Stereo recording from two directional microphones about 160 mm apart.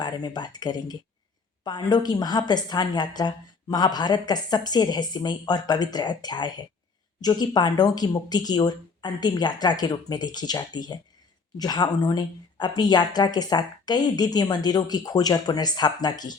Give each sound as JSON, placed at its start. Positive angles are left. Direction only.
{"t": 0.0, "sound": "a woman's voice", "side_deg": 25}